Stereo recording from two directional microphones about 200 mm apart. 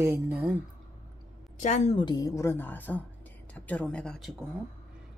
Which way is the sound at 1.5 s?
35° left (ahead or behind).